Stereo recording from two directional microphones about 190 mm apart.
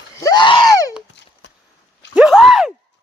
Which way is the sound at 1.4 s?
70° left (ahead or behind).